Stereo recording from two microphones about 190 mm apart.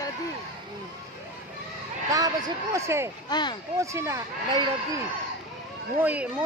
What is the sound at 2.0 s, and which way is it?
Speech, 20° right (ahead or behind).